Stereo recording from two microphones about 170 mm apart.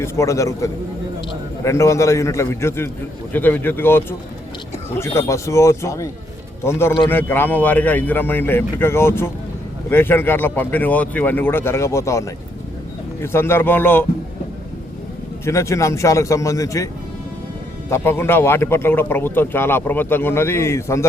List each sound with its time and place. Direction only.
0.0 s speech: 15° left (ahead or behind)
15.4 s speech: 15° left (ahead or behind)